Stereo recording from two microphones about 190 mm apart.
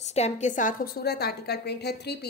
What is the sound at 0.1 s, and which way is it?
Speech, 35° left (ahead or behind).